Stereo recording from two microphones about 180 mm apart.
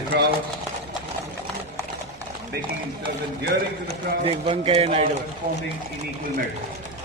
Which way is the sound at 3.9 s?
30° right (ahead or behind).